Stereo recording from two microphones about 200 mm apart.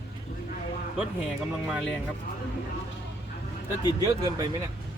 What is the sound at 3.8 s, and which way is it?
Speech, 20° left (ahead or behind).